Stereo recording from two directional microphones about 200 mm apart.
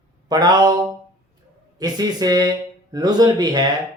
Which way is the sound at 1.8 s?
20° right (ahead or behind).